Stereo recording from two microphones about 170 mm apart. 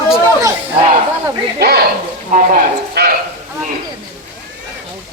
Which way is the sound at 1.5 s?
70° right (ahead or behind).